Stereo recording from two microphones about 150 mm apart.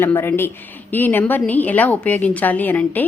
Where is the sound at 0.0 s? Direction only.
15° left (ahead or behind).